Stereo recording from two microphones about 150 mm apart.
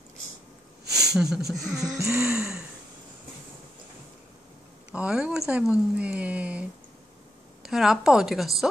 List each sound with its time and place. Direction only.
1.1 s a woman's voice: 5° right (ahead or behind)
2.0 s speech: 20° right (ahead or behind)
2.2 s a sound: 5° right (ahead or behind)
4.9 s speech: 10° right (ahead or behind)
7.6 s a woman's voice: 5° right (ahead or behind)